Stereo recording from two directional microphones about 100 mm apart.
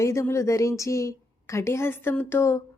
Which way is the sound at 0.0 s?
30° left (ahead or behind).